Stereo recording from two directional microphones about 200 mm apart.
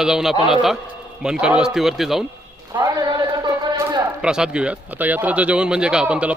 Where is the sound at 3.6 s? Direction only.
20° right (ahead or behind).